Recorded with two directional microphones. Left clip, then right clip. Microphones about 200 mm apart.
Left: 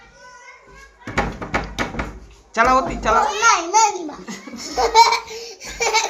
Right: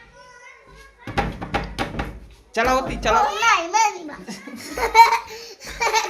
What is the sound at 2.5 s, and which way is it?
Speech, 35° right (ahead or behind).